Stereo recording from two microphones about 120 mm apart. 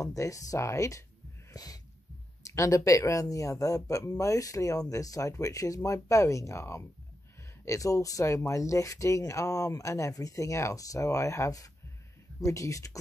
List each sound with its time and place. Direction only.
0.0 s speech: 30° left (ahead or behind)
1.5 s snort: 30° left (ahead or behind)
2.4 s speech: 25° left (ahead or behind)